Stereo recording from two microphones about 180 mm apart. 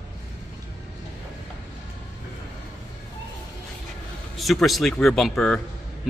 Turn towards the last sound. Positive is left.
turn(degrees=0)  # may be behind; listen again after turning